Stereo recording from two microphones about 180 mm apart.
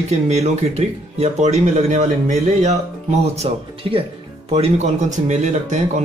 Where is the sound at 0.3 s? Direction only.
35° right (ahead or behind).